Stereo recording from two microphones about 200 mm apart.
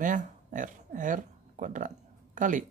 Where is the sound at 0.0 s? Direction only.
40° right (ahead or behind).